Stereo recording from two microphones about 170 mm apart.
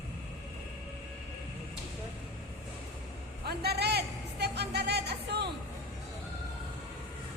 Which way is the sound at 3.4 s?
70° right (ahead or behind).